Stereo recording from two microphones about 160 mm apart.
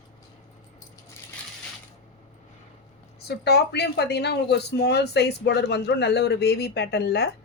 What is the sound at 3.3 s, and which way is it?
Speech, 90° left.